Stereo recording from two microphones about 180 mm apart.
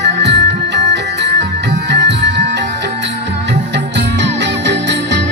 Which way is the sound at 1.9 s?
70° right (ahead or behind).